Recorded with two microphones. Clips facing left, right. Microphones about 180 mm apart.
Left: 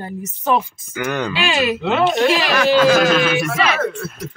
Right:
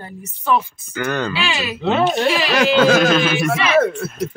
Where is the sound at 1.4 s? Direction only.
45° left (ahead or behind).